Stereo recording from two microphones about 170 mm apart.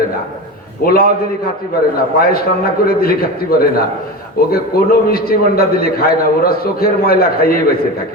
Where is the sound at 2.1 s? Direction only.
65° left (ahead or behind).